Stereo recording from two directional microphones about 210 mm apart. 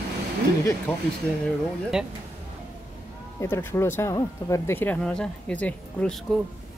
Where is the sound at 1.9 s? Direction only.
5° right (ahead or behind).